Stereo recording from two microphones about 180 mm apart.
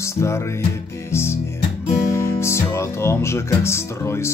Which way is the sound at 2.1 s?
15° left (ahead or behind).